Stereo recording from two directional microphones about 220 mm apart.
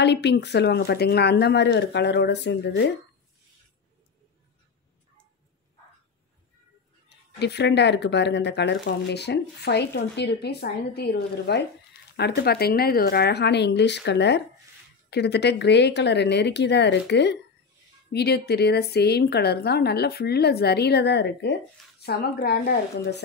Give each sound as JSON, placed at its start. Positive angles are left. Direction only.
{"t": 0.0, "sound": "speech", "side_deg": 50}
{"t": 7.3, "sound": "speech", "side_deg": 50}